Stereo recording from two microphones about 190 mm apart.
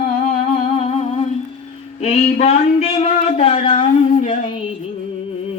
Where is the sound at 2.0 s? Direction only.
35° left (ahead or behind).